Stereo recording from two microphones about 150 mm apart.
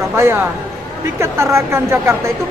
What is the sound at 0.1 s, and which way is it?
Speech, 15° right (ahead or behind).